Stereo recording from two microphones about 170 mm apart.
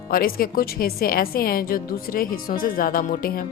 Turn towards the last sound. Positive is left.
turn(degrees=60)  # may be behind; listen again after turning